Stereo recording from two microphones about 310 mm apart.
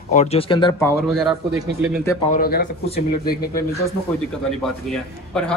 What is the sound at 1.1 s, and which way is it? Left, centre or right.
Speech, centre.